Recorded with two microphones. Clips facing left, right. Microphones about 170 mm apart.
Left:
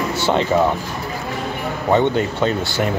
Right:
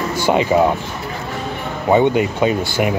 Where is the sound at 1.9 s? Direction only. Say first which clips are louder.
Right 3 dB; 10° right (ahead or behind).